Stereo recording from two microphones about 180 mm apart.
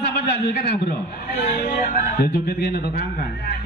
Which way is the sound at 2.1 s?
60° left (ahead or behind).